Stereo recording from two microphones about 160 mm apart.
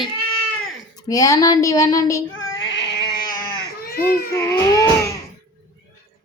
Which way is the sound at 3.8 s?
65° left (ahead or behind).